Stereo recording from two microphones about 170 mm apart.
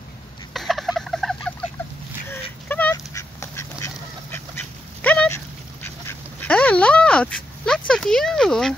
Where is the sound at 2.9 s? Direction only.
15° left (ahead or behind).